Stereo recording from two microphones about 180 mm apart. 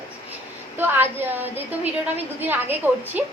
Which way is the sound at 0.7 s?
10° right (ahead or behind).